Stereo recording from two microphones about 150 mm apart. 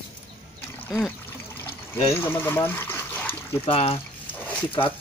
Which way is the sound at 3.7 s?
40° left (ahead or behind).